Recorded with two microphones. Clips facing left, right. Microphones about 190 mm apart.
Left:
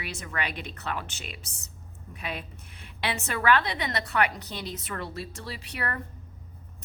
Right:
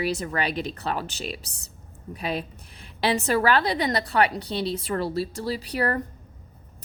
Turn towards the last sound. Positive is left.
turn(degrees=-35)  # may be behind; listen again after turning